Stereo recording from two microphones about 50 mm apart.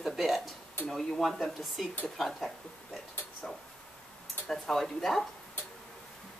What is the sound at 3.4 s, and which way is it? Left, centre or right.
Tick-tock, centre.